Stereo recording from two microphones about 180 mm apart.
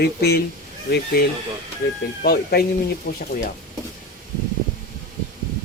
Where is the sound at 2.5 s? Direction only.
65° left (ahead or behind).